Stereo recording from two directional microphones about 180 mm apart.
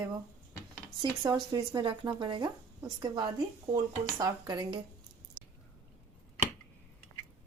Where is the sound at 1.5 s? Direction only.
25° right (ahead or behind).